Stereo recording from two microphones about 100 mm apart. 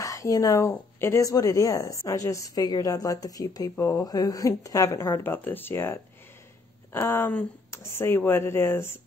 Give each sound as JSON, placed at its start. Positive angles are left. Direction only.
{"t": 0.0, "sound": "a woman's voice", "side_deg": 35}
{"t": 5.2, "sound": "speech", "side_deg": 20}